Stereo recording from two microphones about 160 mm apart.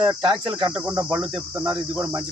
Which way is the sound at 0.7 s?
5° right (ahead or behind).